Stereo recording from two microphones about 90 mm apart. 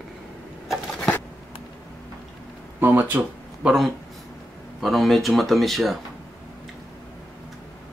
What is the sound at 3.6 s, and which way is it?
Speech, 5° right (ahead or behind).